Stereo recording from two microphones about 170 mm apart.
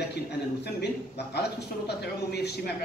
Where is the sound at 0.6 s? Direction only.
75° left (ahead or behind).